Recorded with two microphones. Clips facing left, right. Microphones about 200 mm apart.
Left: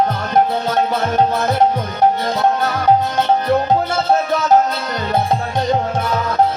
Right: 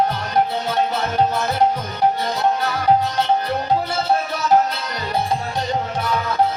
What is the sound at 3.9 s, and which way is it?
Music, 45° left (ahead or behind).